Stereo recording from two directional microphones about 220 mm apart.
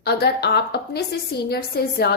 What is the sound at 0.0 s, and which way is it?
A woman's voice, 45° left (ahead or behind).